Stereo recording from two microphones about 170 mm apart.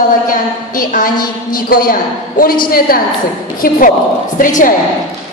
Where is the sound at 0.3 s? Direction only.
55° left (ahead or behind).